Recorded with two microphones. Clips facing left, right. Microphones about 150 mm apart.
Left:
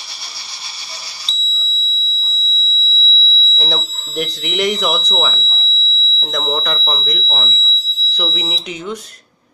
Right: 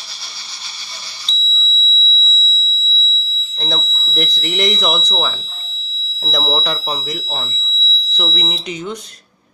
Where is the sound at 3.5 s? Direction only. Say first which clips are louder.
Left 1 dB; 10° left (ahead or behind).